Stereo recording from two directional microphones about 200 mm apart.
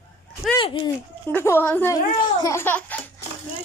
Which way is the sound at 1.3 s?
10° left (ahead or behind).